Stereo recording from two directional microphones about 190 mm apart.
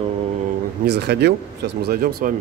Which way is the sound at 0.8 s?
60° right (ahead or behind).